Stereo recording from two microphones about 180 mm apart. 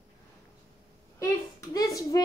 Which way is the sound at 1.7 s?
20° left (ahead or behind).